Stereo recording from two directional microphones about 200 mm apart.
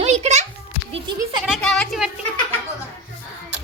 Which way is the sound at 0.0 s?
35° right (ahead or behind).